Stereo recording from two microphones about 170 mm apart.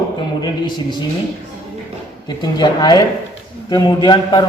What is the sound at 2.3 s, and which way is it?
A man's voice, 25° left (ahead or behind).